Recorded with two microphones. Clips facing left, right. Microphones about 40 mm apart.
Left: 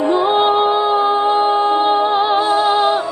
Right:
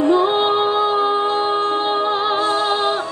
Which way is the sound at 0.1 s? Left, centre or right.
Centre.